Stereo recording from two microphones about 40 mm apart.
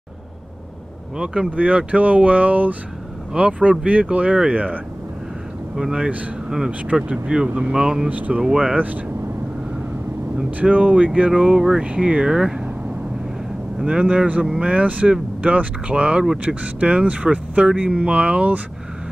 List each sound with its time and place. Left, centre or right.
1.1 s speech: right
1.5 s speech: right
5.8 s speech: centre
7.1 s speech: right
7.4 s speech: right
7.7 s speech: right
8.1 s speech: right
8.4 s speech: centre
10.6 s speech: right
11.2 s speech: right
11.8 s speech: right
13.8 s speech: right
14.7 s speech: right
15.9 s speech: right